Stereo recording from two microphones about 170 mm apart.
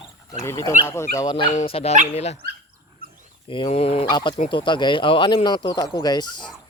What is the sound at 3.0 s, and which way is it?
Dog, 60° right (ahead or behind).